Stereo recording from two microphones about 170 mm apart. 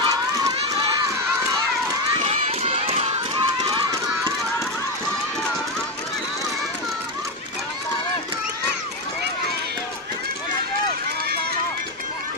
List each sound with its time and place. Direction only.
0.0 s run: 20° right (ahead or behind)
2.2 s run: 35° right (ahead or behind)